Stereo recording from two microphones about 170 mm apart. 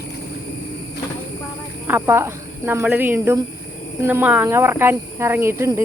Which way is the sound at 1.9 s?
15° right (ahead or behind).